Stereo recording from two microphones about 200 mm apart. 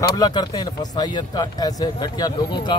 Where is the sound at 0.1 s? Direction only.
20° left (ahead or behind).